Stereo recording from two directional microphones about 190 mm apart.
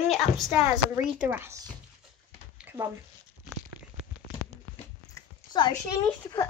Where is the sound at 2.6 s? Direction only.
10° right (ahead or behind).